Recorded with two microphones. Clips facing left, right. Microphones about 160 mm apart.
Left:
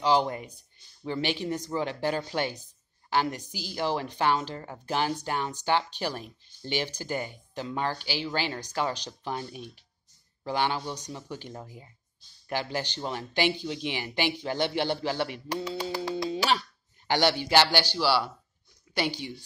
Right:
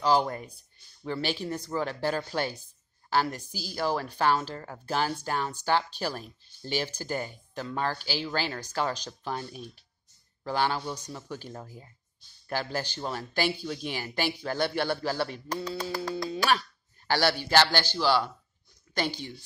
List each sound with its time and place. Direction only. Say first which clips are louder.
0.0 s a man's voice: even; 20° left (ahead or behind)
8.0 s speech: even; 40° right (ahead or behind)
8.3 s a man's voice: even; 20° left (ahead or behind)